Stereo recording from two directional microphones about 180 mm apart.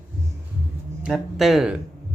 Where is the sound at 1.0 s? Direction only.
Centre (ahead or behind).